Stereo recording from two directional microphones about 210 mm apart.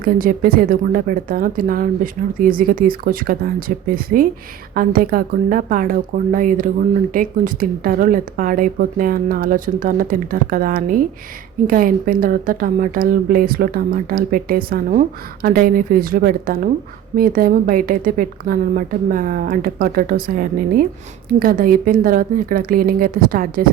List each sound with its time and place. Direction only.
0.0 s a woman's voice: 45° right (ahead or behind)